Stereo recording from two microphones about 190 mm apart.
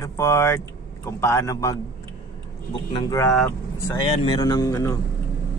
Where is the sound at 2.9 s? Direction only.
15° left (ahead or behind).